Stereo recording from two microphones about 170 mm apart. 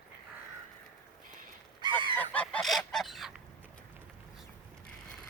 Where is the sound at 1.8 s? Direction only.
30° right (ahead or behind).